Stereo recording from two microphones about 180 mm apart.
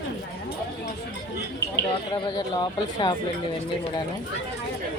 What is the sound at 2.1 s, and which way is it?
Speech, 25° left (ahead or behind).